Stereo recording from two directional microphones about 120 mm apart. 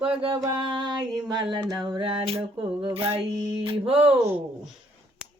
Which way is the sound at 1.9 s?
45° right (ahead or behind).